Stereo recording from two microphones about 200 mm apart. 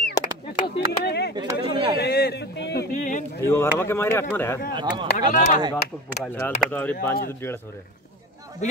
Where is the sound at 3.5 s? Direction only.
15° left (ahead or behind).